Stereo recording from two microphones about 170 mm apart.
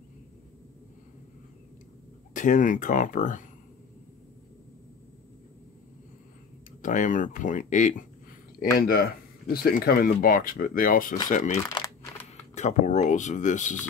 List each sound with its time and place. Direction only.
2.3 s speech: 50° left (ahead or behind)
6.8 s speech: 50° left (ahead or behind)
8.7 s speech: 60° left (ahead or behind)